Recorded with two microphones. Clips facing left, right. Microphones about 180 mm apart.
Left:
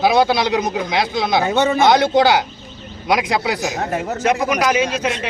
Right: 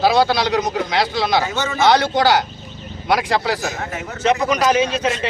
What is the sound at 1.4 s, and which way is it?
Speech, 60° left (ahead or behind).